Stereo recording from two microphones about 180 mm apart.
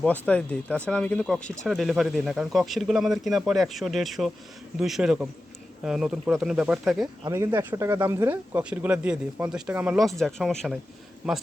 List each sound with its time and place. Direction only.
0.0 s speech: 5° left (ahead or behind)
7.3 s speech: 15° right (ahead or behind); by 10.8 s centre (ahead or behind)